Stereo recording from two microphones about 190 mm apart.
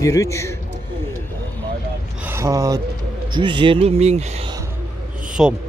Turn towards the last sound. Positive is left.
turn(degrees=-5)  # may be behind; listen again after turning